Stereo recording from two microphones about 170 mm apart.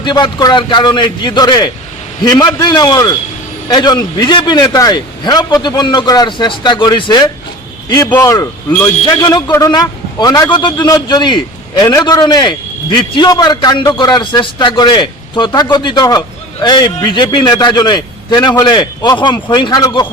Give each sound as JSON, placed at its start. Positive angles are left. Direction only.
{"t": 0.0, "sound": "a man's voice", "side_deg": 25}